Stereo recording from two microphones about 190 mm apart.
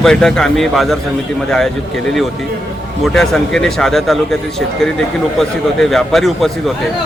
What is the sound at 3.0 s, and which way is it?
Speech, centre (ahead or behind).